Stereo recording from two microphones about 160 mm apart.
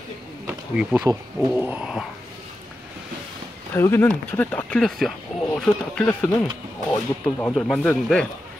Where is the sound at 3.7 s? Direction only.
15° left (ahead or behind).